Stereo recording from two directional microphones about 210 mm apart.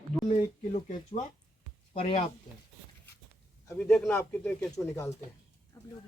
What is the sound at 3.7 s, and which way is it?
Speech, 5° left (ahead or behind).